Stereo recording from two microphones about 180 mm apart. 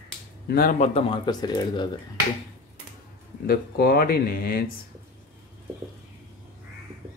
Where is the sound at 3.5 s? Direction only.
55° left (ahead or behind).